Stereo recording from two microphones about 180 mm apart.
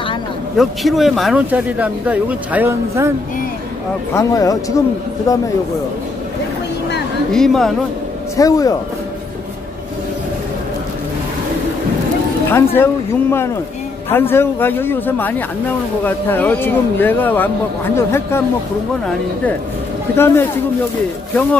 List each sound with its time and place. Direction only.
0.6 s speech: centre (ahead or behind)
4.1 s speech: 15° left (ahead or behind)
7.3 s a woman's voice: centre (ahead or behind)
8.4 s speech: 20° left (ahead or behind)
12.4 s speech: 10° left (ahead or behind)
20.2 s speech: 15° left (ahead or behind)